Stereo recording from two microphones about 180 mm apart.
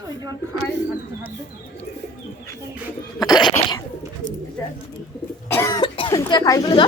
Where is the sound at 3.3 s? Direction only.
25° left (ahead or behind).